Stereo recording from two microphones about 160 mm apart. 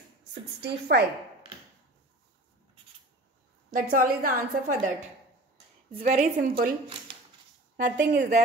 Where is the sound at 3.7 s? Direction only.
60° right (ahead or behind).